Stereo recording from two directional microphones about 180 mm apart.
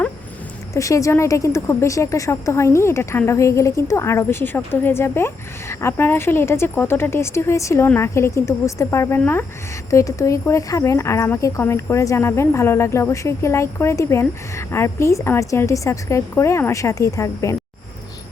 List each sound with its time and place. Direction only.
0.7 s a woman's voice: 15° left (ahead or behind)